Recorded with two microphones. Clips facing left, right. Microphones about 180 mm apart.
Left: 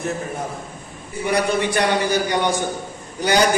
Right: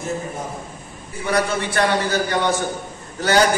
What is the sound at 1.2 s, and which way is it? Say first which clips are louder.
A man's voice: left 1 dB; 15° left (ahead or behind).